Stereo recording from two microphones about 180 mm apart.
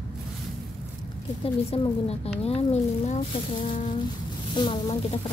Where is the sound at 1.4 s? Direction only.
35° left (ahead or behind).